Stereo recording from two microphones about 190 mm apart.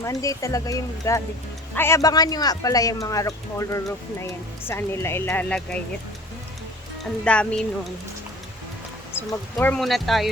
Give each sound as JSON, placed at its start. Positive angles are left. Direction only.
{"t": 0.0, "sound": "speech", "side_deg": 15}
{"t": 7.0, "sound": "speech", "side_deg": 5}
{"t": 9.1, "sound": "speech", "side_deg": 10}